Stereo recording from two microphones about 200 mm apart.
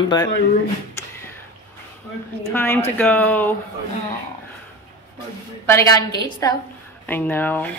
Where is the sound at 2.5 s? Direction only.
10° left (ahead or behind).